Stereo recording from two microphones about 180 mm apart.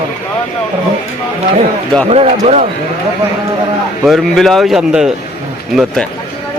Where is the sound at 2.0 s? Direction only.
35° right (ahead or behind).